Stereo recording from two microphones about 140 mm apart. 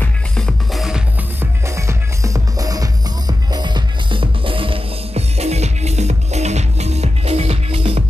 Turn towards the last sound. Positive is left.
turn(degrees=-45)  # may be behind; listen again after turning